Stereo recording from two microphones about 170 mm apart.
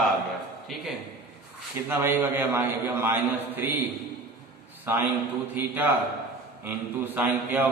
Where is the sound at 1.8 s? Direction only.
15° right (ahead or behind).